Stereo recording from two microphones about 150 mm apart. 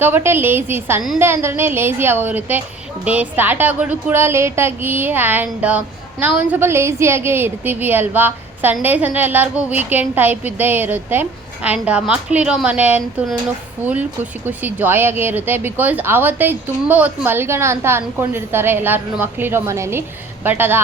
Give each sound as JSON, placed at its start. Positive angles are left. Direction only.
{"t": 0.0, "sound": "a woman's voice", "side_deg": -15}